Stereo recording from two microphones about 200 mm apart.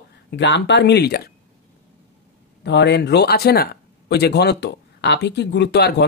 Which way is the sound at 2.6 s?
60° left (ahead or behind).